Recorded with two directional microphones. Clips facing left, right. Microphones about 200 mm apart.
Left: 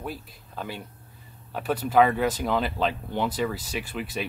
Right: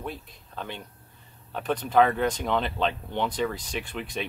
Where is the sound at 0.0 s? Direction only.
5° left (ahead or behind).